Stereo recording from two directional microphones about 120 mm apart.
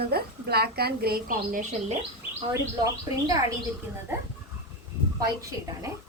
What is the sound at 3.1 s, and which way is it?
Speech, 30° right (ahead or behind).